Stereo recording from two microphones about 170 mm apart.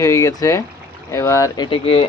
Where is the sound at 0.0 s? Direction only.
15° left (ahead or behind); by 2.0 s 35° left (ahead or behind).